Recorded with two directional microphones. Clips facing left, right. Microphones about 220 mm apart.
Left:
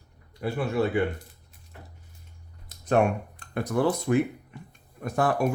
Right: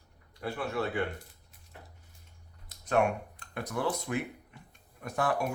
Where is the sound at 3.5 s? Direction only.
40° left (ahead or behind).